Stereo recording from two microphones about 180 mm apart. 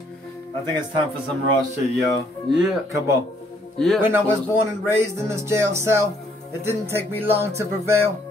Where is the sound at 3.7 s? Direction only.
Centre (ahead or behind).